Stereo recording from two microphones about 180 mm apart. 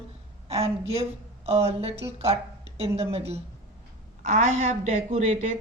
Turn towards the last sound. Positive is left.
turn(degrees=-40)  # may be behind; listen again after turning